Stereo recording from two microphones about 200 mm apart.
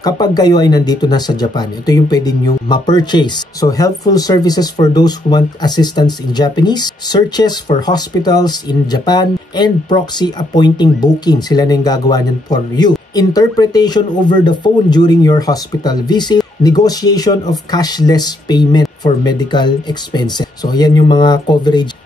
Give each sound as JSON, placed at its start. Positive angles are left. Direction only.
{"t": 0.0, "sound": "speech", "side_deg": 20}